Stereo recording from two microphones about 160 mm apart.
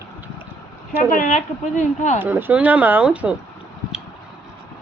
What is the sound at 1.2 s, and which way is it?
Speech, 50° left (ahead or behind).